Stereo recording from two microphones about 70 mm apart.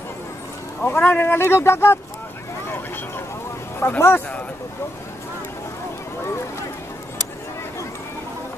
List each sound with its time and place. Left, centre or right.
0.8 s speech: left
3.8 s speech: left